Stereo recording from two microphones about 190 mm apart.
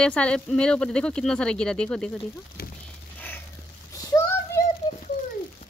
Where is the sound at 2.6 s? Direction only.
55° left (ahead or behind).